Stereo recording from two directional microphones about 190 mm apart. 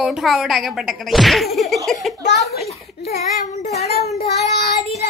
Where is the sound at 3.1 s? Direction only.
35° left (ahead or behind).